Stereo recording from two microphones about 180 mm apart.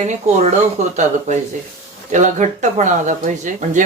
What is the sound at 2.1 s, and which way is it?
Speech, 40° right (ahead or behind).